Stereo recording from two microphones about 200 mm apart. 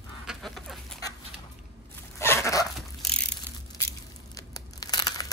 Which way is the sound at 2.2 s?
15° left (ahead or behind).